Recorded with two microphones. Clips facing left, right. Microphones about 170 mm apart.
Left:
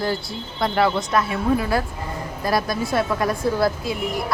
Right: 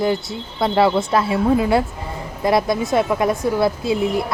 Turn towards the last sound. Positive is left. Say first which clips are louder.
# right 3 dB
turn(degrees=-25)  # may be behind; listen again after turning